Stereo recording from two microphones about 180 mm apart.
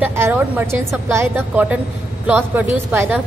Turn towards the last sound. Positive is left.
turn(degrees=-10)  # may be behind; listen again after turning